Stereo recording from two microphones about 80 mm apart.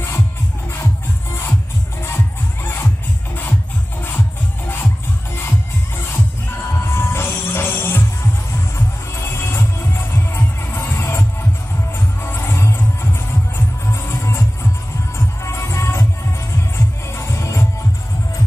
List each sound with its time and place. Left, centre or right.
2.0 s music: left
6.8 s music: left
12.3 s music: left
14.0 s music: left